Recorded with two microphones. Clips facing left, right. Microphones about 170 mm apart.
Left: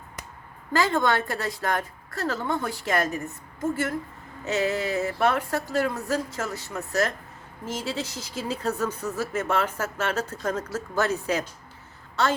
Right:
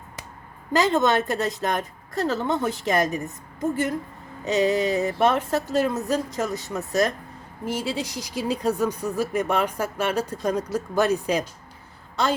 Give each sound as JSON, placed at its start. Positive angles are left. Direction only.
{"t": 0.7, "sound": "a woman's voice", "side_deg": -20}